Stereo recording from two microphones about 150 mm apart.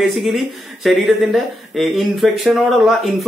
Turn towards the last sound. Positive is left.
turn(degrees=0)  # may be behind; listen again after turning